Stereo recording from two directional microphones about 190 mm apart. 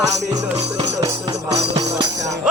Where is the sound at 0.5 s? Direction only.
35° right (ahead or behind).